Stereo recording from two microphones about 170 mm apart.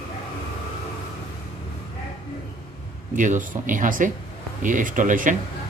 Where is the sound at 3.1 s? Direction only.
50° right (ahead or behind).